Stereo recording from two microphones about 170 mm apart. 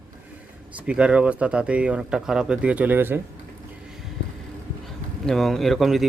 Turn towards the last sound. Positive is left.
turn(degrees=0)  # may be behind; listen again after turning